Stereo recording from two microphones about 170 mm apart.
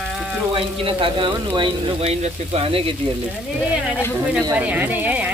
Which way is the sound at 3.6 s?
5° right (ahead or behind).